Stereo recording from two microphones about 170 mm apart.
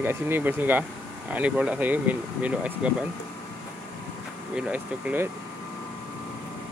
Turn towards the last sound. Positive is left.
turn(degrees=-10)  # may be behind; listen again after turning